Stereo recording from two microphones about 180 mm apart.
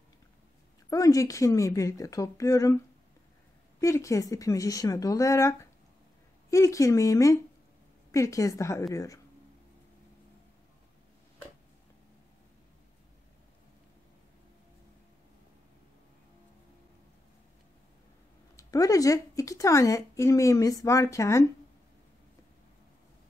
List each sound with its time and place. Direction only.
0.8 s speech: 20° left (ahead or behind)
3.8 s speech: 15° left (ahead or behind)
18.6 s speech: 20° left (ahead or behind)